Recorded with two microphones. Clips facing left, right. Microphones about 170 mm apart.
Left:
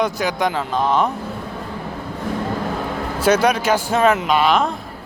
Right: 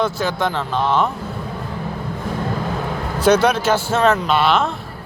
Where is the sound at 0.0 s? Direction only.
15° left (ahead or behind).